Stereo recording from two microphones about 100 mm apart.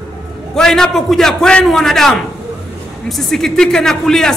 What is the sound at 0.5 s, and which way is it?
A man's voice, 5° left (ahead or behind).